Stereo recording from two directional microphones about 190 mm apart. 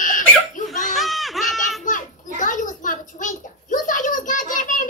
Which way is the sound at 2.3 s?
45° left (ahead or behind).